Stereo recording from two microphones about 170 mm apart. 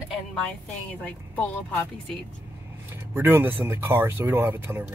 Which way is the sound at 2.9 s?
10° right (ahead or behind).